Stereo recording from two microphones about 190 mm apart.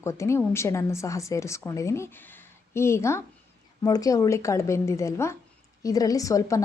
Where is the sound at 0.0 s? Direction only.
15° left (ahead or behind).